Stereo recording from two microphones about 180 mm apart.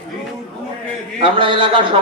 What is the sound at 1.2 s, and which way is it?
Speech, 30° right (ahead or behind).